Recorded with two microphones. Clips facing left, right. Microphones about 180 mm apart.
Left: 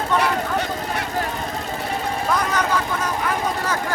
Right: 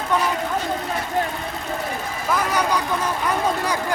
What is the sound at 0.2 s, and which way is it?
Vehicle, 70° left (ahead or behind).